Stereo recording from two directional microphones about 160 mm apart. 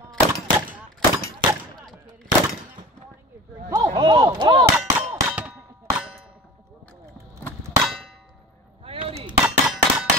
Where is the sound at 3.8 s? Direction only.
30° right (ahead or behind).